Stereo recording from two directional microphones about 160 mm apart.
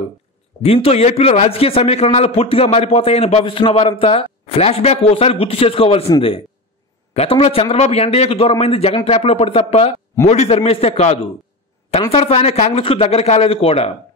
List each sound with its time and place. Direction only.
0.8 s a man's voice: 40° left (ahead or behind)
7.2 s a man's voice: 35° left (ahead or behind)